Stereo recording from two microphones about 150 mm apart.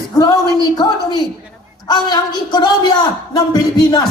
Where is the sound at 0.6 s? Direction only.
25° left (ahead or behind).